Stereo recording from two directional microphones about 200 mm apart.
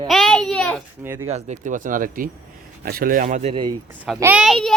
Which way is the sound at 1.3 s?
35° right (ahead or behind).